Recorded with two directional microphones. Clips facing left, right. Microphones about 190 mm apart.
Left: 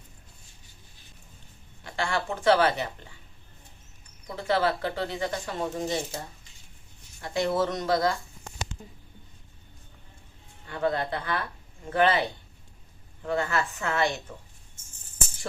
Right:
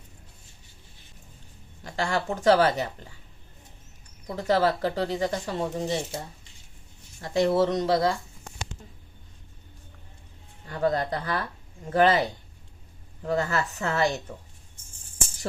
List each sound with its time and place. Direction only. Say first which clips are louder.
1.8 s speech: right 2 dB; 40° right (ahead or behind)
4.3 s speech: right 3 dB; 40° right (ahead or behind)
7.2 s speech: right 4 dB; 35° right (ahead or behind)
10.7 s speech: right 2 dB; 40° right (ahead or behind)
13.2 s speech: right 1 dB; 40° right (ahead or behind)